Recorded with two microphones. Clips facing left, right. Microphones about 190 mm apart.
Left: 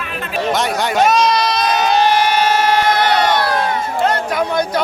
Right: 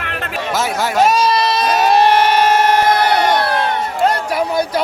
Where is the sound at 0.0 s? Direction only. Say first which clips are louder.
Even; 70° right (ahead or behind).